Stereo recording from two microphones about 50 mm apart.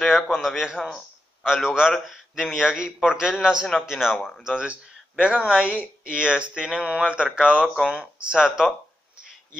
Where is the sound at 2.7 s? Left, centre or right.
Centre.